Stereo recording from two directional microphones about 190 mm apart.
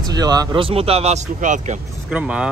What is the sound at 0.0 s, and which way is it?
Speech, 20° right (ahead or behind).